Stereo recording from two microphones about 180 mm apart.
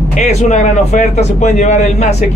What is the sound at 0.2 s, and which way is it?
Speech, 40° left (ahead or behind).